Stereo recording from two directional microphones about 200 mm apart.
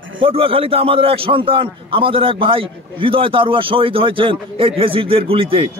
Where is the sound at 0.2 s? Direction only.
25° right (ahead or behind).